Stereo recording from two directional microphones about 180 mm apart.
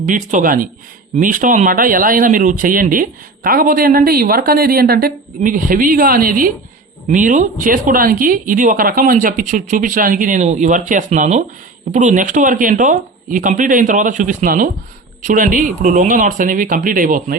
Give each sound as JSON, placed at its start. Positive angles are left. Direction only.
{"t": 0.0, "sound": "speech", "side_deg": -45}